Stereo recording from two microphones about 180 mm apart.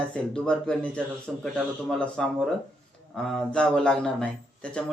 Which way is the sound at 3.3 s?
5° left (ahead or behind).